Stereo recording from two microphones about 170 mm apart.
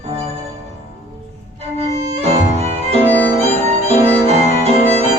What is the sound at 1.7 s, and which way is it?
Violin, 40° right (ahead or behind).